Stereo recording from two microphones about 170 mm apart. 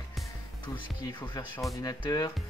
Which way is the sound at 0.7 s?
25° left (ahead or behind).